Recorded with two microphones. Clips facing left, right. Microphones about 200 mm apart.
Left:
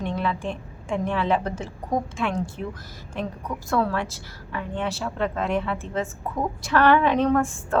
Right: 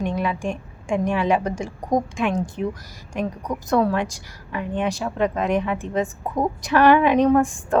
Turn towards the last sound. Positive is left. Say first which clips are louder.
# right 4 dB
turn(degrees=-15)  # may be behind; listen again after turning